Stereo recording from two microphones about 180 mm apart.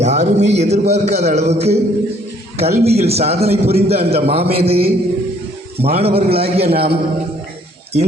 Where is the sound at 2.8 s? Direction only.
35° right (ahead or behind).